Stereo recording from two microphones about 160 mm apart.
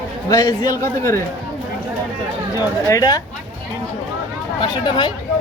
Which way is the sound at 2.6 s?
20° left (ahead or behind).